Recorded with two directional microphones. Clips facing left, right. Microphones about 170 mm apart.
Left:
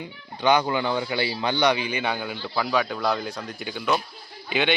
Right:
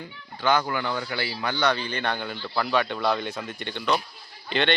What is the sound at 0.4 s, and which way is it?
A man's voice, 20° left (ahead or behind).